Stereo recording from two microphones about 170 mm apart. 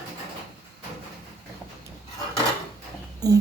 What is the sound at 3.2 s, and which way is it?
Speech, 20° right (ahead or behind).